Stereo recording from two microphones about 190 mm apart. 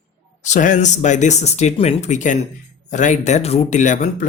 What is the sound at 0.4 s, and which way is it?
Speech, 40° left (ahead or behind).